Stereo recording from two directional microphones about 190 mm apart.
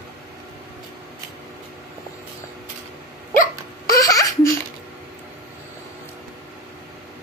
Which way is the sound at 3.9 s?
20° left (ahead or behind).